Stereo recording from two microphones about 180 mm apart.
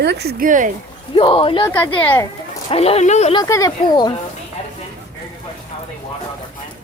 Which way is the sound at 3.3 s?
20° left (ahead or behind).